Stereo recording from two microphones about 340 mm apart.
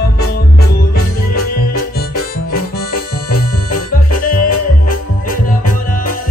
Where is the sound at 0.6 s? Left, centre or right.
Left.